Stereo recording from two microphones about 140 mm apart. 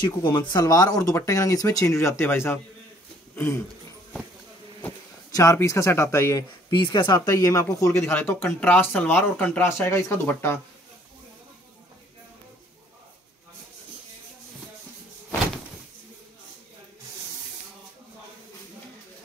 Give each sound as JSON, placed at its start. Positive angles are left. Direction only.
{"t": 0.0, "sound": "speech", "side_deg": 30}
{"t": 5.3, "sound": "speech", "side_deg": 25}
{"t": 6.7, "sound": "speech", "side_deg": 35}